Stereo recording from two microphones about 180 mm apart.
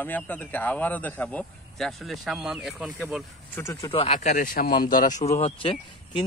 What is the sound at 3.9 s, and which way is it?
Speech, 35° left (ahead or behind).